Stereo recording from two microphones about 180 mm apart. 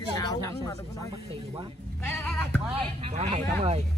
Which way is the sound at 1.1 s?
25° right (ahead or behind).